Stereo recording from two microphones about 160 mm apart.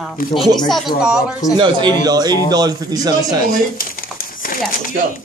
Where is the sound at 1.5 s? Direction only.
30° right (ahead or behind).